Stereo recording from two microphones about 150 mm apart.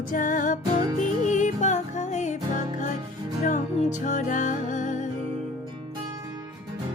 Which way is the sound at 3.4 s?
55° left (ahead or behind).